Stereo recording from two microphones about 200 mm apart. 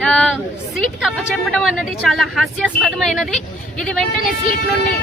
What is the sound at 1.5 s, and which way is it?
Speech, centre (ahead or behind).